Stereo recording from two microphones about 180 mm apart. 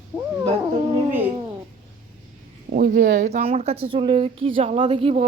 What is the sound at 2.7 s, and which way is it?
Speech, 50° right (ahead or behind).